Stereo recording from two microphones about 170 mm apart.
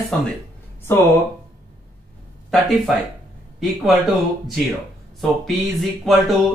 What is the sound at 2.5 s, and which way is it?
Speech, centre (ahead or behind).